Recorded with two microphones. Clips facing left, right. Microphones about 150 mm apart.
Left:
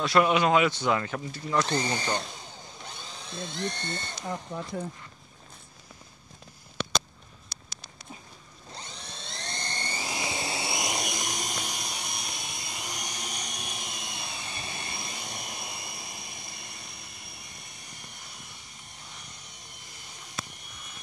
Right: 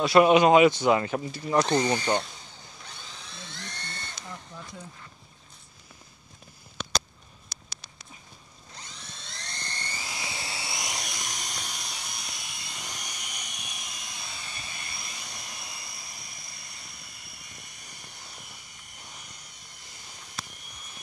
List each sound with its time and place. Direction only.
0.0 s speech: 10° right (ahead or behind); by 2.2 s 25° right (ahead or behind)
3.3 s speech: 25° left (ahead or behind)
4.2 s speech: 60° left (ahead or behind)
8.7 s a sound: 30° left (ahead or behind)
13.2 s a sound: 40° left (ahead or behind)
14.2 s vehicle: 25° left (ahead or behind)